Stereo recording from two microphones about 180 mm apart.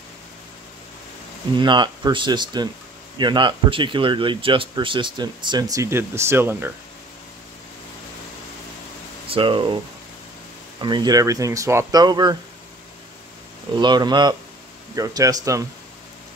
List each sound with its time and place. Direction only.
1.6 s speech: 25° right (ahead or behind)
9.3 s speech: 30° right (ahead or behind)
10.8 s speech: 25° right (ahead or behind)
13.7 s speech: 25° right (ahead or behind)